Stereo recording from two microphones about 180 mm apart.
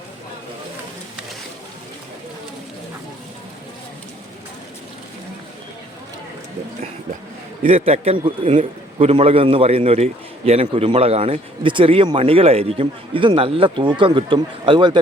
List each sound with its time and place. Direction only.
7.7 s a man's voice: 40° right (ahead or behind)